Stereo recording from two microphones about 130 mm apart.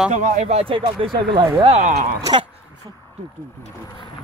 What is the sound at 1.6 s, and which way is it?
Speech, 55° right (ahead or behind).